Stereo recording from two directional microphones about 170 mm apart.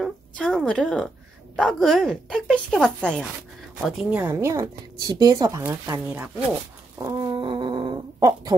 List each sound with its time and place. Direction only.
0.0 s speech: centre (ahead or behind)
3.8 s speech: 10° right (ahead or behind)
6.0 s speech: 10° right (ahead or behind)
7.0 s fart: 25° right (ahead or behind)